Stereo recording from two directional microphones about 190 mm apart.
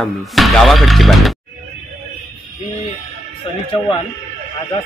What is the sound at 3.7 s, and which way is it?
Speech, 30° left (ahead or behind).